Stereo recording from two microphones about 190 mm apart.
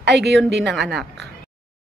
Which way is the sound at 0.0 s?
65° right (ahead or behind).